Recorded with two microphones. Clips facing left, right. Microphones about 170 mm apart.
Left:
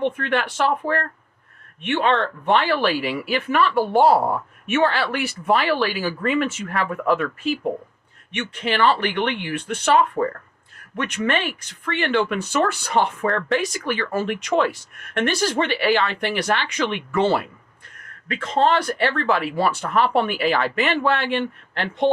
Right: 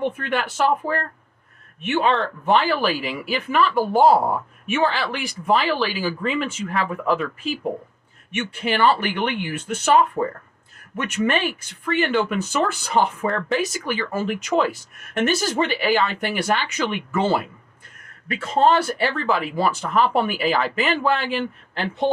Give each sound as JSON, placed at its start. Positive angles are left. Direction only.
{"t": 0.0, "sound": "speech", "side_deg": -5}